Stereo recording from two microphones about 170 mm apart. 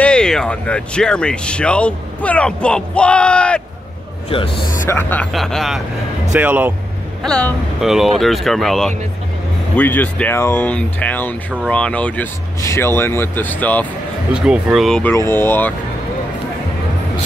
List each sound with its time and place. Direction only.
0.0 s speech: 5° left (ahead or behind)
4.6 s speech: 55° left (ahead or behind)
4.8 s speech: 10° left (ahead or behind)
6.3 s speech: 10° right (ahead or behind)
7.2 s speech: 5° left (ahead or behind)
14.3 s speech: 5° right (ahead or behind); by 15.7 s 10° left (ahead or behind)